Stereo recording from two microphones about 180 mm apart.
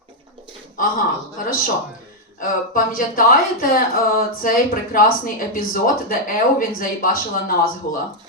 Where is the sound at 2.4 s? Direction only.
50° left (ahead or behind).